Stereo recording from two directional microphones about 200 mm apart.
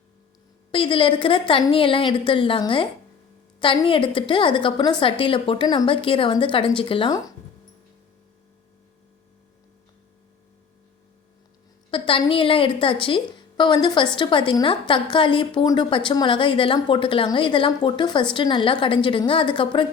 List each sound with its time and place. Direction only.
0.7 s a woman's voice: 25° left (ahead or behind)
11.9 s a woman's voice: 25° left (ahead or behind)